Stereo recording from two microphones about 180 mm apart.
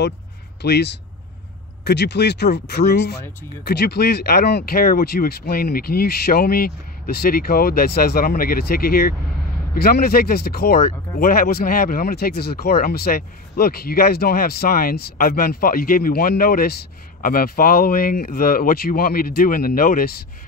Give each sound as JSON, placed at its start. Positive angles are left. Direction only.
{"t": 0.6, "sound": "speech", "side_deg": 70}